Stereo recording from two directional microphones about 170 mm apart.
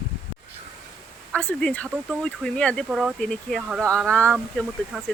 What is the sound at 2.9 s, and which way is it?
Speech, 5° right (ahead or behind).